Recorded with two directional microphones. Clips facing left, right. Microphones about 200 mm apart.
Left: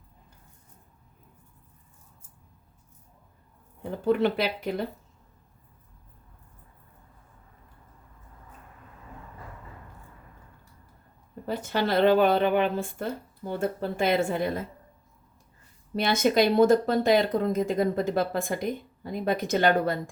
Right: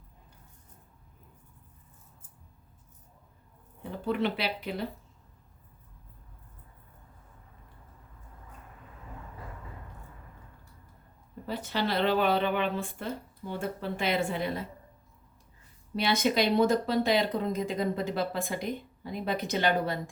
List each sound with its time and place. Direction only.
4.0 s speech: 45° left (ahead or behind)
11.4 s speech: 50° left (ahead or behind)
16.0 s speech: 45° left (ahead or behind)